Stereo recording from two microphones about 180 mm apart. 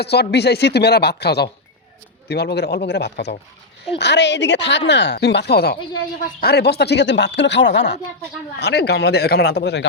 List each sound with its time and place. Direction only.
0.0 s speech: 65° left (ahead or behind)